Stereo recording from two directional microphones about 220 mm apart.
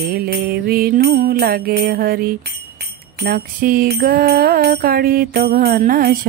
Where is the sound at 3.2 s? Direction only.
40° right (ahead or behind).